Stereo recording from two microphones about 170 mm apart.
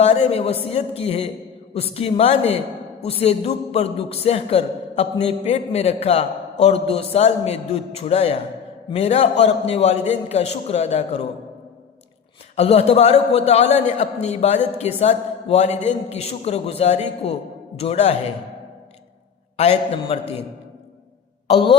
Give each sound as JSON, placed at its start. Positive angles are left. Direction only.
{"t": 0.0, "sound": "a man's voice", "side_deg": 40}
{"t": 12.5, "sound": "a man's voice", "side_deg": 35}
{"t": 19.5, "sound": "a man's voice", "side_deg": 40}
{"t": 21.4, "sound": "speech", "side_deg": 30}